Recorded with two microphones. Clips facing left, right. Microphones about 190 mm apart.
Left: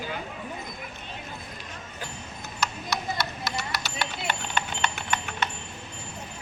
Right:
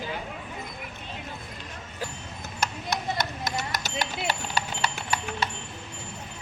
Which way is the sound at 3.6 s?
45° right (ahead or behind).